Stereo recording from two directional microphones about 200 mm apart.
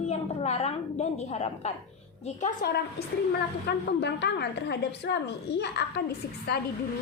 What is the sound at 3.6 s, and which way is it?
A woman's voice, 55° left (ahead or behind).